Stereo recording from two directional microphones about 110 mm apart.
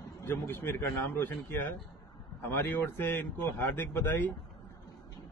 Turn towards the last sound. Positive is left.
turn(degrees=20)  # may be behind; listen again after turning